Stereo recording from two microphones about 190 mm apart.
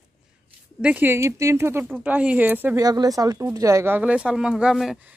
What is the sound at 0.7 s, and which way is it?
Speech, 10° right (ahead or behind).